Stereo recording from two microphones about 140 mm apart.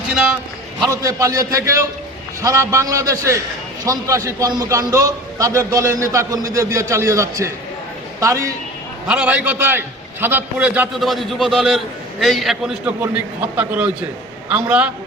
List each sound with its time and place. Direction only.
0.1 s a sound: 5° right (ahead or behind)
0.9 s a man's voice: 25° right (ahead or behind)
9.0 s a man's voice: 10° right (ahead or behind)
11.0 s a man's voice: centre (ahead or behind)